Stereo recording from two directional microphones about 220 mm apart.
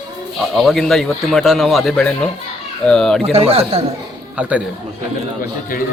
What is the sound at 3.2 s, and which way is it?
Speech, 25° right (ahead or behind).